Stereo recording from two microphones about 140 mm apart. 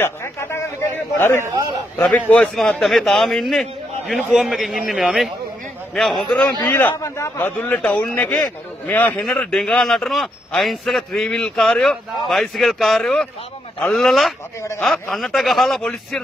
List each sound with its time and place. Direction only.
0.0 s a sound: 20° left (ahead or behind)
1.4 s a man's voice: 25° right (ahead or behind)
2.0 s a man's voice: 10° left (ahead or behind)
6.6 s a man's voice: 15° left (ahead or behind); by 14.3 s centre (ahead or behind)
14.6 s a man's voice: 20° left (ahead or behind)
14.9 s a man's voice: centre (ahead or behind)